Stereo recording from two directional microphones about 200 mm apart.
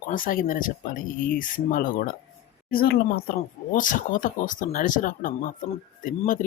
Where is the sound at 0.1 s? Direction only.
45° left (ahead or behind).